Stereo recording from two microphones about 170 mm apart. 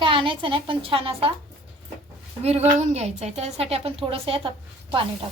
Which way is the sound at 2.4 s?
40° right (ahead or behind).